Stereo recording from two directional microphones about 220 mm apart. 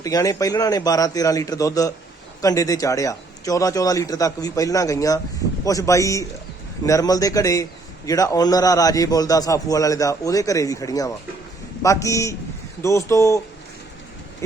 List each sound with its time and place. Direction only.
0.0 s a man's voice: 15° left (ahead or behind)